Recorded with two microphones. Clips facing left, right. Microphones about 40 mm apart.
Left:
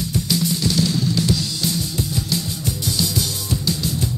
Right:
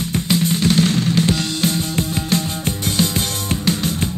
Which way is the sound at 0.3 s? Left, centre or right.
Right.